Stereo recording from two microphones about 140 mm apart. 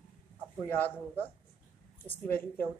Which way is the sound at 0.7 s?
15° left (ahead or behind).